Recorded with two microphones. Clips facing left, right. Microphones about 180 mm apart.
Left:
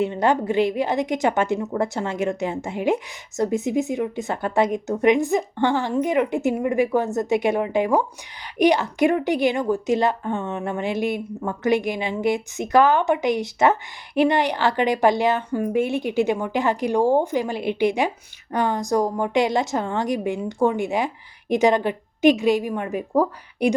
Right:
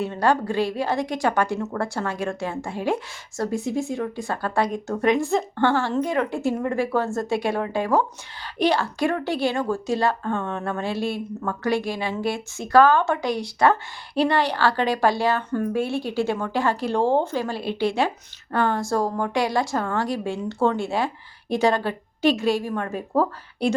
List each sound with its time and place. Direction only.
0.0 s a woman's voice: 20° left (ahead or behind)